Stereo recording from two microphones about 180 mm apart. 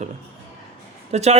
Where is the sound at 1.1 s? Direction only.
40° right (ahead or behind).